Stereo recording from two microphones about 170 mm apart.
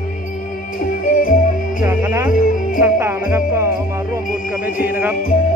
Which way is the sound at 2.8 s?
15° right (ahead or behind).